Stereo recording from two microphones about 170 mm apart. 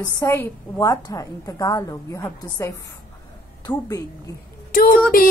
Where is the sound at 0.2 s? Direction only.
15° left (ahead or behind).